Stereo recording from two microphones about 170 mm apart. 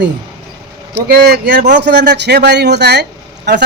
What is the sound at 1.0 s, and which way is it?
Speech, 65° right (ahead or behind).